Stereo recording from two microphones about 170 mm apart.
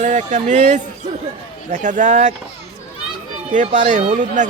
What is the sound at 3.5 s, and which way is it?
Speech, 45° right (ahead or behind).